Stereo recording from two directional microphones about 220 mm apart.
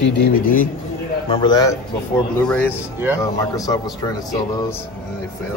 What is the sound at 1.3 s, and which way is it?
Speech, 20° left (ahead or behind).